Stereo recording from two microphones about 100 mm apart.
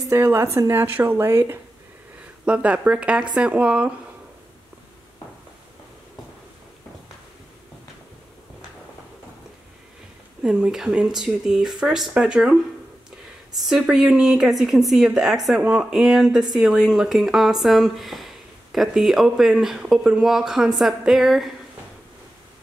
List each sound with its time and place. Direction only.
0.1 s speech: 25° right (ahead or behind)
2.4 s speech: 10° right (ahead or behind)
10.4 s speech: 10° right (ahead or behind)
13.7 s speech: 5° right (ahead or behind)